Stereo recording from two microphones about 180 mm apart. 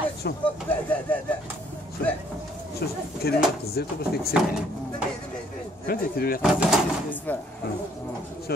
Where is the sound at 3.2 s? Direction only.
60° left (ahead or behind).